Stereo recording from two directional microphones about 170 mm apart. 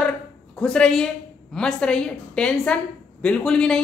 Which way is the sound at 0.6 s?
5° left (ahead or behind).